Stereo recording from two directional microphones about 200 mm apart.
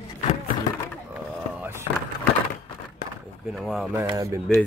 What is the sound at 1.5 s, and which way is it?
Skateboard, 10° right (ahead or behind).